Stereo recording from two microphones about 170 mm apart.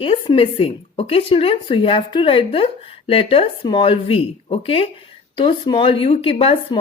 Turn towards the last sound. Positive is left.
turn(degrees=30)  # may be behind; listen again after turning